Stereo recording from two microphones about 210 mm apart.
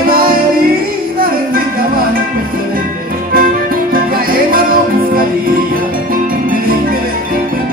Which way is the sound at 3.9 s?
45° right (ahead or behind).